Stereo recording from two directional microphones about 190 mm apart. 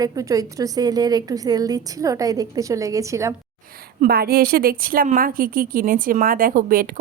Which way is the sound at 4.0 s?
55° right (ahead or behind).